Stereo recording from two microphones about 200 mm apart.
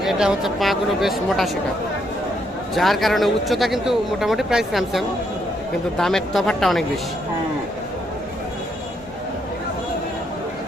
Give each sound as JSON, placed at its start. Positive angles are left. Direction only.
{"t": 0.0, "sound": "a man's voice", "side_deg": -5}
{"t": 2.7, "sound": "a man's voice", "side_deg": 0}